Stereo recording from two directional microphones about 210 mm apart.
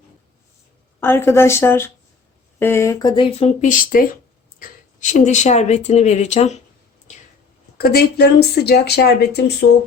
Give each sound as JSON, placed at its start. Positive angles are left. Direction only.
{"t": 0.9, "sound": "a woman's voice", "side_deg": 10}
{"t": 7.1, "sound": "a sound", "side_deg": 35}
{"t": 7.8, "sound": "speech", "side_deg": 45}